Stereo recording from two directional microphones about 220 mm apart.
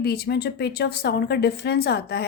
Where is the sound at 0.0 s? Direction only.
45° left (ahead or behind).